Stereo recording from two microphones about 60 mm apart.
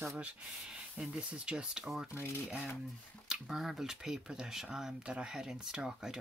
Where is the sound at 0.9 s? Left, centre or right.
Centre.